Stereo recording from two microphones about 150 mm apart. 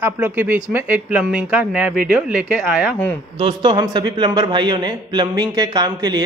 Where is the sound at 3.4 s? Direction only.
35° right (ahead or behind).